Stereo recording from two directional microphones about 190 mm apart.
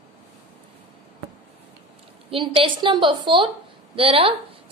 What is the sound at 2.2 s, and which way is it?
A woman's voice, 30° right (ahead or behind).